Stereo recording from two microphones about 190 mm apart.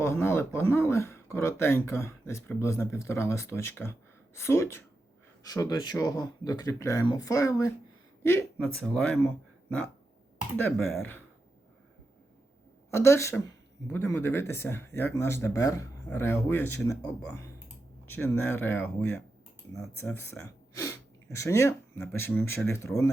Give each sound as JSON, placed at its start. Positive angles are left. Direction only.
{"t": 0.0, "sound": "speech", "side_deg": 15}
{"t": 12.9, "sound": "speech", "side_deg": 15}